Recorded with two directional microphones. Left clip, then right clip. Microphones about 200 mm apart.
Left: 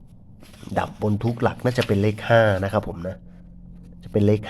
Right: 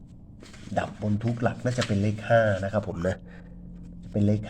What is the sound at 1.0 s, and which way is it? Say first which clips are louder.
Speech: left 6 dB; 30° left (ahead or behind).